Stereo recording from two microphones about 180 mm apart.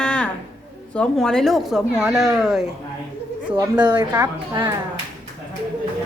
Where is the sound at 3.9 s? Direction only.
25° right (ahead or behind).